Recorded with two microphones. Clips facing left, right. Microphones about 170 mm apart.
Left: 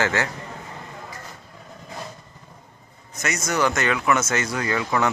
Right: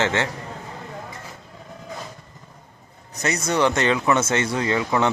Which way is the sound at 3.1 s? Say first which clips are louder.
Right 3 dB; 35° right (ahead or behind).